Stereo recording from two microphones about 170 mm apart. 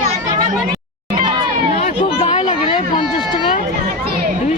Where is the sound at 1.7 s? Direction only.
40° left (ahead or behind).